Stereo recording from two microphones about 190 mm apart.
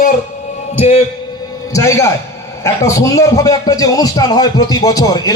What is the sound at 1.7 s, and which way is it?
A man's voice, 15° left (ahead or behind).